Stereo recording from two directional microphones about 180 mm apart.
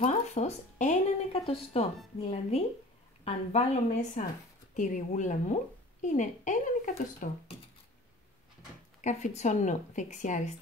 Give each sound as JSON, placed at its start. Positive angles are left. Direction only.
{"t": 0.0, "sound": "a sound", "side_deg": 35}
{"t": 2.2, "sound": "a woman's voice", "side_deg": 35}
{"t": 9.0, "sound": "speech", "side_deg": 40}